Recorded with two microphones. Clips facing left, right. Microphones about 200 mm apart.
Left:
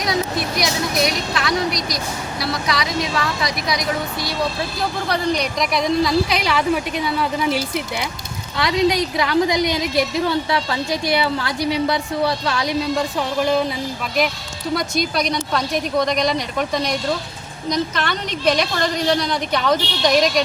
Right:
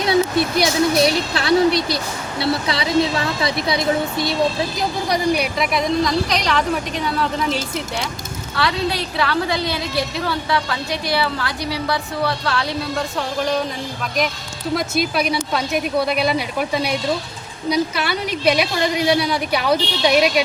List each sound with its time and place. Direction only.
0.0 s a woman's voice: 30° right (ahead or behind)
4.8 s a woman's voice: 15° right (ahead or behind); by 12.7 s 20° left (ahead or behind)
14.8 s a woman's voice: 5° right (ahead or behind)